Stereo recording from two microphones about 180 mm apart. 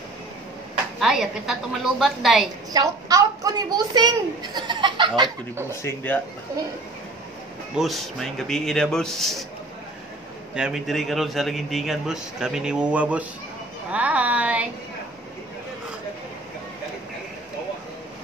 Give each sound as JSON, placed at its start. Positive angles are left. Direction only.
{"t": 0.9, "sound": "a man's voice", "side_deg": 0}
{"t": 2.7, "sound": "a woman's voice", "side_deg": -20}
{"t": 5.7, "sound": "speech", "side_deg": 15}
{"t": 7.7, "sound": "a man's voice", "side_deg": 0}
{"t": 10.5, "sound": "a man's voice", "side_deg": -5}